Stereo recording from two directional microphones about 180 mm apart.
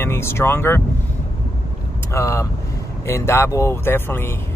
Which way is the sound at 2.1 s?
15° left (ahead or behind).